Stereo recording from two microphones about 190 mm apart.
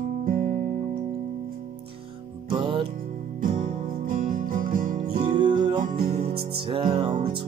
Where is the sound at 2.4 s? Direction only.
25° right (ahead or behind).